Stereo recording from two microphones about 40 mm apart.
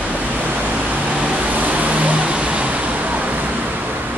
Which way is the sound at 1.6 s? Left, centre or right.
Right.